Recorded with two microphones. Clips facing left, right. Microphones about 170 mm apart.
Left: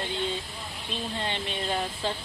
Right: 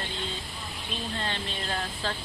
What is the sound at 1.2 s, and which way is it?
Speech, 20° left (ahead or behind).